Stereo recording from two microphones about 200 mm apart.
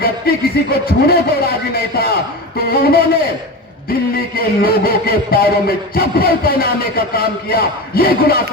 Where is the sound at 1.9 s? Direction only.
50° left (ahead or behind).